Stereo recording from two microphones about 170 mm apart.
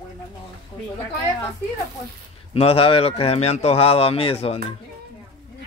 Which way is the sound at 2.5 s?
35° left (ahead or behind).